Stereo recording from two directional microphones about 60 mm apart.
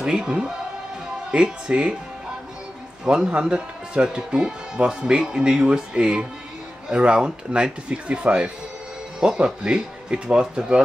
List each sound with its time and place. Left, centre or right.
0.0 s speech: centre
3.1 s speech: centre